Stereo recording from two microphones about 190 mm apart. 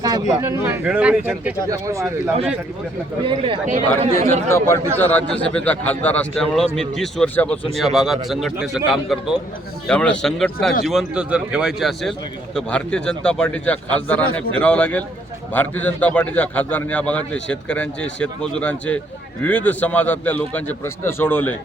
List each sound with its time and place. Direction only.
0.0 s speech: 20° right (ahead or behind)
3.2 s a man's voice: 25° right (ahead or behind)
4.5 s a man's voice: 15° left (ahead or behind)